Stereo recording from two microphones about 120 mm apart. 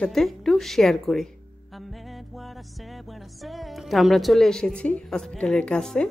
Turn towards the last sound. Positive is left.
turn(degrees=5)  # may be behind; listen again after turning